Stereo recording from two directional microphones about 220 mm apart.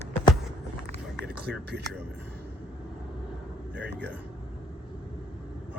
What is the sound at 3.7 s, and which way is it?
Speech, 50° right (ahead or behind).